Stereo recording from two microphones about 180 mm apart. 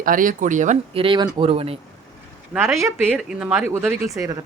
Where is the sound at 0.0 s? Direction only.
50° right (ahead or behind).